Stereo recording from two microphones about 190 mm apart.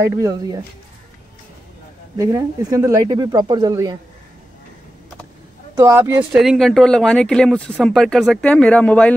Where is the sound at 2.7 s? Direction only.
20° right (ahead or behind).